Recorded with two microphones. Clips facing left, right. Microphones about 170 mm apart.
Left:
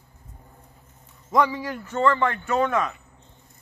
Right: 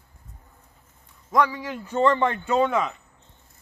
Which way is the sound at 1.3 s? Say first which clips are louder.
Left 1 dB; 5° left (ahead or behind).